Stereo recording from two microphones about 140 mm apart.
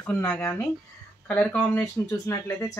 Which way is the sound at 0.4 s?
20° left (ahead or behind).